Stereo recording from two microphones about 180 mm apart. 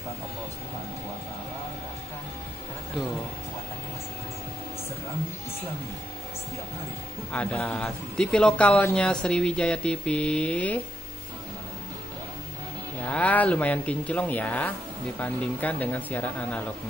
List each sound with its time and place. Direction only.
7.3 s a man's voice: 10° left (ahead or behind)
13.1 s speech: 10° left (ahead or behind)